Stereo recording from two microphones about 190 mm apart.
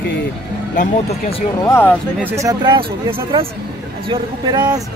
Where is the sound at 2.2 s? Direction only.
10° right (ahead or behind).